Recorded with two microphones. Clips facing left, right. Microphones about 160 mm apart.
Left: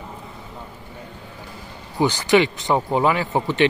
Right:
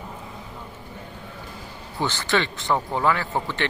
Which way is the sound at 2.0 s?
15° left (ahead or behind).